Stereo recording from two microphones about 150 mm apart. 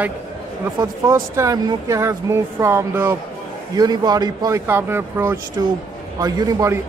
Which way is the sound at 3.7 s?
25° right (ahead or behind).